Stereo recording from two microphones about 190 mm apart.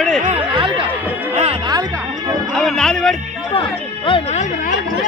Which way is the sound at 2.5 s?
5° left (ahead or behind).